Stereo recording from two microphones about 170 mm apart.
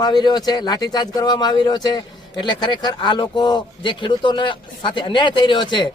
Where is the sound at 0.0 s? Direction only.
25° left (ahead or behind).